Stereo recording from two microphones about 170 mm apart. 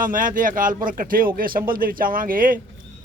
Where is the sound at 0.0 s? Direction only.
55° right (ahead or behind).